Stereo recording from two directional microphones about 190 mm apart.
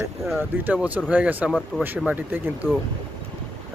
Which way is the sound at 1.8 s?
10° right (ahead or behind).